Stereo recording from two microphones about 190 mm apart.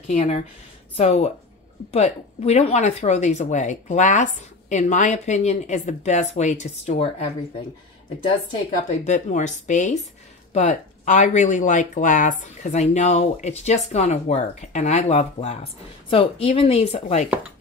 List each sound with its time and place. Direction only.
0.1 s speech: 35° left (ahead or behind)
9.0 s speech: 40° left (ahead or behind)